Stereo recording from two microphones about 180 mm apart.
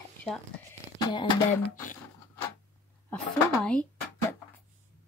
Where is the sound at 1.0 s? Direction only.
25° left (ahead or behind).